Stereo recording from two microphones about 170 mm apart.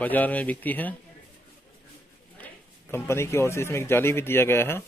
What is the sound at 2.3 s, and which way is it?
Speech, 10° left (ahead or behind).